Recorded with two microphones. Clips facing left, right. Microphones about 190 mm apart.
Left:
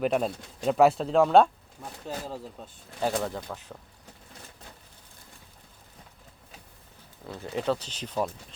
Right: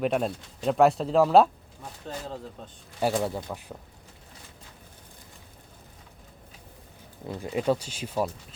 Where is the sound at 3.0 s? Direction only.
10° right (ahead or behind).